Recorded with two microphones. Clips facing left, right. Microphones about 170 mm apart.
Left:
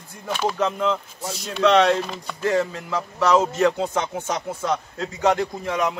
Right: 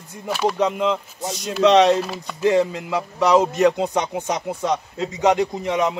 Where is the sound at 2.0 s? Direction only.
5° right (ahead or behind).